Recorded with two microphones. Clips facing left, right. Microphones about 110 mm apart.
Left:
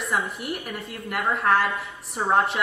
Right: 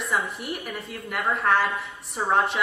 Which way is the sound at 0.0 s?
Centre (ahead or behind).